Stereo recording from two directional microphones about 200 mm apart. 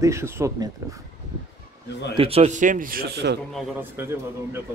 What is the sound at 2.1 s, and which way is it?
A man's voice, 30° right (ahead or behind).